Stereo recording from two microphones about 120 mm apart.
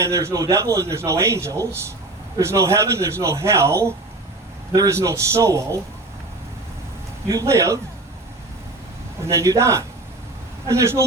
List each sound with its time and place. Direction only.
0.0 s a man's voice: 25° right (ahead or behind)
7.3 s a man's voice: 25° right (ahead or behind)
9.2 s a man's voice: 25° right (ahead or behind)